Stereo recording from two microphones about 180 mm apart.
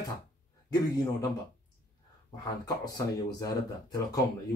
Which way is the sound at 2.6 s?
20° left (ahead or behind).